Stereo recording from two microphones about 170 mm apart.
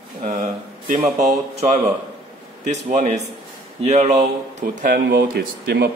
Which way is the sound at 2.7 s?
45° right (ahead or behind).